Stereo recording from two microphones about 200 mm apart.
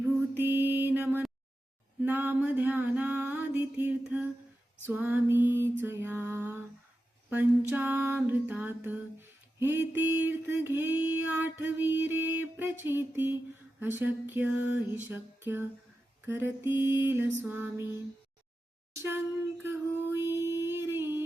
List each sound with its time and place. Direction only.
0.0 s music: 10° right (ahead or behind)
7.7 s a sound: 10° right (ahead or behind)
10.2 s music: 10° right (ahead or behind)
14.5 s a sound: 70° left (ahead or behind)
14.9 s music: 10° right (ahead or behind)
19.6 s female singing: 10° right (ahead or behind)